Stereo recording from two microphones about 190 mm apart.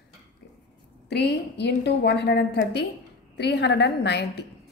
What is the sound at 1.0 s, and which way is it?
A woman's voice, 65° left (ahead or behind).